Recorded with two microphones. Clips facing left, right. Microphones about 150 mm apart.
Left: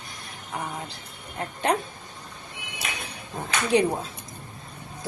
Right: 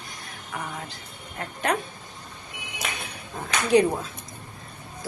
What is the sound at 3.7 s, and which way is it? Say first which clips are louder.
Speech: right 3 dB; 25° left (ahead or behind).